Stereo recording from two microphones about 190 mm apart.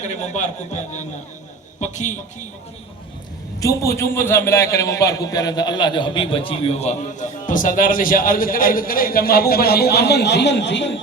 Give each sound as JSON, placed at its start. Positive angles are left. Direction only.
{"t": 0.0, "sound": "a man's voice", "side_deg": 40}
{"t": 3.6, "sound": "a man's voice", "side_deg": 15}